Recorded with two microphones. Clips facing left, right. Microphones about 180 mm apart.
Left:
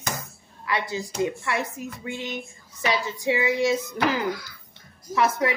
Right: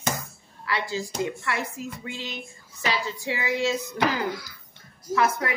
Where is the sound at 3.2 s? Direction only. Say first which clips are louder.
Left 5 dB; 20° left (ahead or behind).